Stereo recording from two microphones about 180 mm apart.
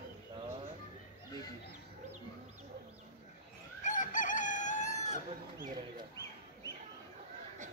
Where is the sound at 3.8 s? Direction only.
45° left (ahead or behind).